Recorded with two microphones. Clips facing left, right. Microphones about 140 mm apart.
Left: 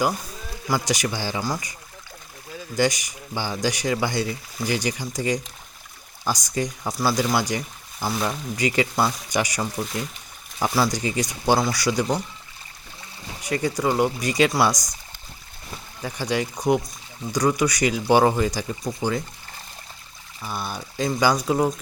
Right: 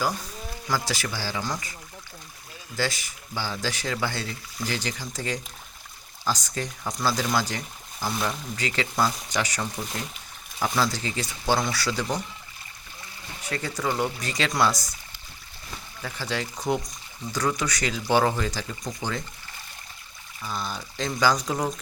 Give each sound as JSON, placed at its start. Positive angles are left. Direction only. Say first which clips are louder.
{"t": 0.7, "sound": "speech", "louder": "left 5 dB", "side_deg": 15}
{"t": 2.7, "sound": "speech", "louder": "left 7 dB", "side_deg": 15}
{"t": 13.4, "sound": "speech", "louder": "left 6 dB", "side_deg": 15}
{"t": 16.0, "sound": "speech", "louder": "left 6 dB", "side_deg": 15}
{"t": 20.4, "sound": "speech", "louder": "left 2 dB", "side_deg": 10}